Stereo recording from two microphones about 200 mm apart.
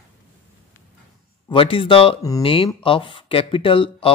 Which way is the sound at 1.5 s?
25° left (ahead or behind).